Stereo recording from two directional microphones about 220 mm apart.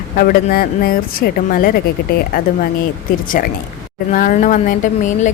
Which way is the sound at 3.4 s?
40° left (ahead or behind).